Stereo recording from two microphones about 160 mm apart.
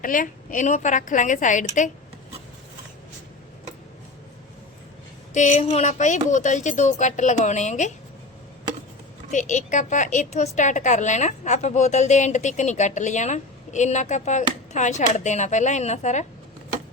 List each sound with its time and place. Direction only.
0.0 s a woman's voice: 55° left (ahead or behind)
5.3 s a woman's voice: 50° left (ahead or behind)
9.3 s a woman's voice: 50° left (ahead or behind)